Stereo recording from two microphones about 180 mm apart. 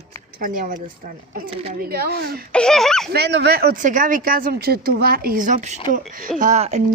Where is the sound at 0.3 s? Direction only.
50° right (ahead or behind).